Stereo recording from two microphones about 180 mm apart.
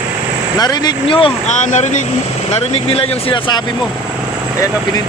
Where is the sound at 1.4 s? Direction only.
40° left (ahead or behind).